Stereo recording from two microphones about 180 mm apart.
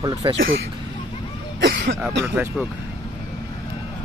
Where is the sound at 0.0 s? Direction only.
20° right (ahead or behind).